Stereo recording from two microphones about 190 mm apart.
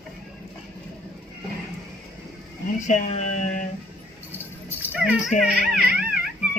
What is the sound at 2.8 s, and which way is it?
Speech, 40° left (ahead or behind).